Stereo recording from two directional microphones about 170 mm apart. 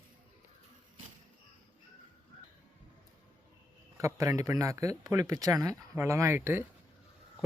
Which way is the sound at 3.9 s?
20° right (ahead or behind).